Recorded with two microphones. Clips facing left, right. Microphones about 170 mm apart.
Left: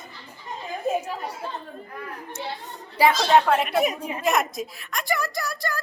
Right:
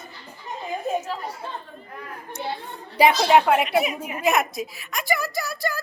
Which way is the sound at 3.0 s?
15° right (ahead or behind).